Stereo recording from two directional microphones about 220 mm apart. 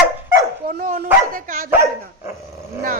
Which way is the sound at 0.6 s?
40° right (ahead or behind).